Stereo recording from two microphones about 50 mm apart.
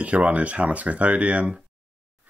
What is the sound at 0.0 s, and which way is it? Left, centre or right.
Speech, right.